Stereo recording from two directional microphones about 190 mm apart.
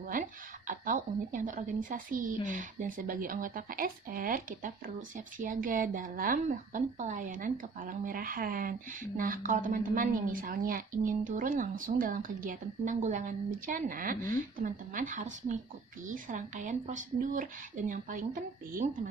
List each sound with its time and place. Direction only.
0.7 s speech: 45° right (ahead or behind)